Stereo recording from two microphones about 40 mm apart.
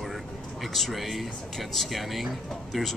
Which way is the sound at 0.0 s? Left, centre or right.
Centre.